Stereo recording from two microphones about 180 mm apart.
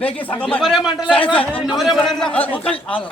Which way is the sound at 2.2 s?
10° left (ahead or behind).